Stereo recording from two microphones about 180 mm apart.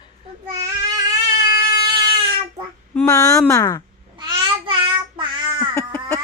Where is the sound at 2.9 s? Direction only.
20° left (ahead or behind).